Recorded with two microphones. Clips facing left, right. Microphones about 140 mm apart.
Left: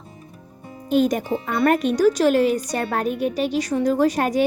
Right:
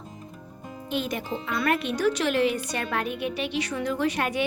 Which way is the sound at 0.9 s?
45° left (ahead or behind).